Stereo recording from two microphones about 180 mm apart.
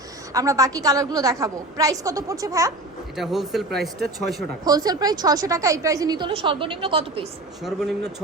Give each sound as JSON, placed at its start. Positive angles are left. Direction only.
{"t": 0.3, "sound": "speech", "side_deg": -20}
{"t": 3.2, "sound": "speech", "side_deg": 0}
{"t": 4.6, "sound": "speech", "side_deg": -20}